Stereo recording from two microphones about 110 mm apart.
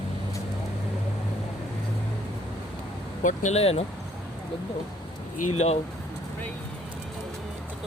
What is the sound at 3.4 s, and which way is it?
Speech, 70° left (ahead or behind).